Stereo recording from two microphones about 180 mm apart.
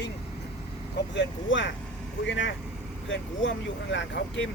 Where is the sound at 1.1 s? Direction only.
90° left.